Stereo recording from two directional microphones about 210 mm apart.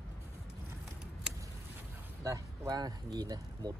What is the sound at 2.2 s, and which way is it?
Speech, 15° right (ahead or behind).